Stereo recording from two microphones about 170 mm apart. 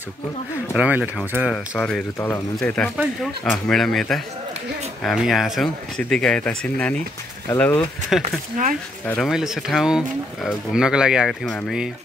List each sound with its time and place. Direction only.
0.7 s speech: 10° right (ahead or behind); by 7.8 s 15° left (ahead or behind)
8.2 s speech: 50° right (ahead or behind)
9.0 s speech: 10° left (ahead or behind)
9.3 s speech: 5° right (ahead or behind)